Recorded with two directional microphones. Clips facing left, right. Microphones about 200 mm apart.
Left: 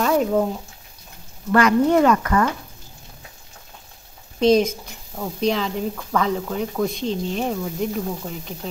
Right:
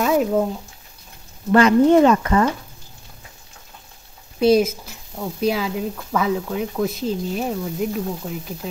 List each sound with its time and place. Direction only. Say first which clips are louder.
0.0 s a sound: right 1 dB; 5° right (ahead or behind)
1.5 s speech: right 3 dB; 25° right (ahead or behind)
4.4 s a woman's voice: right 1 dB; 5° right (ahead or behind)